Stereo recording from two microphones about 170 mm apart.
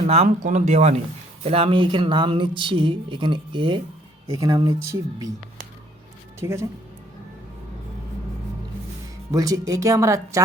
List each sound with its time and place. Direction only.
0.0 s speech: 40° right (ahead or behind); by 5.3 s 20° right (ahead or behind)
6.4 s speech: 15° right (ahead or behind)
9.3 s speech: 20° right (ahead or behind)